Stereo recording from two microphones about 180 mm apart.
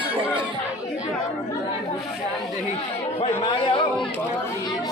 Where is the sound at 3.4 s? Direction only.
30° left (ahead or behind).